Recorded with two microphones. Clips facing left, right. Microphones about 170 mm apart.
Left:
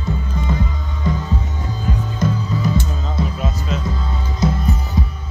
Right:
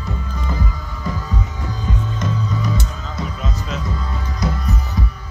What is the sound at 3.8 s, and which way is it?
Music, 25° left (ahead or behind).